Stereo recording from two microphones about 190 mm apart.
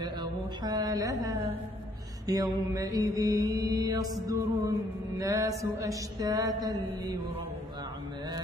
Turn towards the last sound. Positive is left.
turn(degrees=-20)  # may be behind; listen again after turning